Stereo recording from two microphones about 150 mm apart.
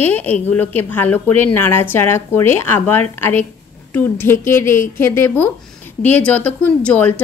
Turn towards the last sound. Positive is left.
turn(degrees=10)  # may be behind; listen again after turning